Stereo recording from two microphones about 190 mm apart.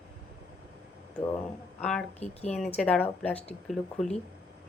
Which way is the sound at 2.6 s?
5° left (ahead or behind).